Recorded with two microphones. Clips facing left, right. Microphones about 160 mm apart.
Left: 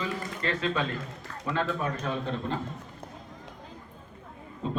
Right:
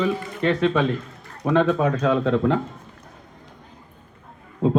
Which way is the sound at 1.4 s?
90° right.